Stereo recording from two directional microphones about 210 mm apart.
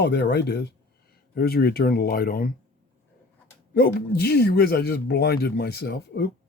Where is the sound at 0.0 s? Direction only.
50° left (ahead or behind).